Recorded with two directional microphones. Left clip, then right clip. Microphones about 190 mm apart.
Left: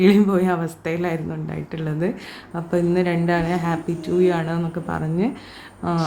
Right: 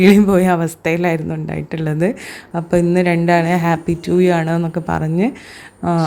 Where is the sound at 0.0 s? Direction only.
35° right (ahead or behind).